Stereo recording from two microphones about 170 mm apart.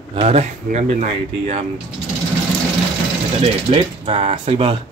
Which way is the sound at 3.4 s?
30° right (ahead or behind).